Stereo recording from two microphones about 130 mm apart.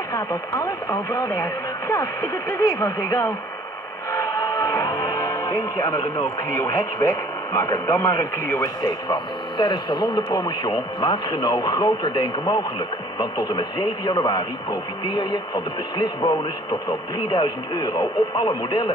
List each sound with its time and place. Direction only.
0.1 s speech: 25° left (ahead or behind)
9.1 s speech: 35° left (ahead or behind)